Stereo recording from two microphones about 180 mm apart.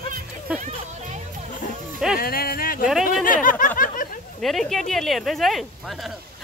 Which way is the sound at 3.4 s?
50° left (ahead or behind).